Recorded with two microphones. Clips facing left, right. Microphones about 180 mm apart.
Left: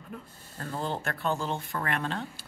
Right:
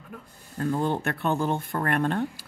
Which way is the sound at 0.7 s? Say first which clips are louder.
Right 7 dB; 60° right (ahead or behind).